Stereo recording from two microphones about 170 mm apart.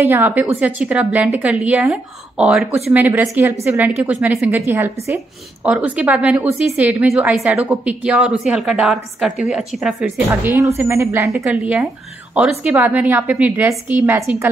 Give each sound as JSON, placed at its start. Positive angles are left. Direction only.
{"t": 0.0, "sound": "a woman's voice", "side_deg": -10}